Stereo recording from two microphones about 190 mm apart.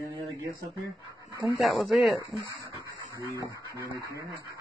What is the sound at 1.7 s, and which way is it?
Speech, centre (ahead or behind).